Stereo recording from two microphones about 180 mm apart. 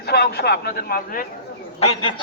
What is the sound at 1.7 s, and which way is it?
Speech, 35° left (ahead or behind).